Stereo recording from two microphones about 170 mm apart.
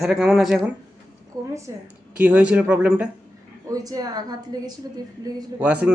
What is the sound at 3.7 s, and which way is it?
A woman's voice, 20° right (ahead or behind).